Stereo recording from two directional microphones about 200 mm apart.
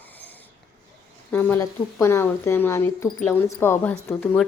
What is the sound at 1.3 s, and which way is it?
Speech, 15° left (ahead or behind).